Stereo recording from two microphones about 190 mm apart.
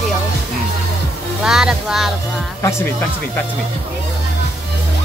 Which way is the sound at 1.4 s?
5° right (ahead or behind).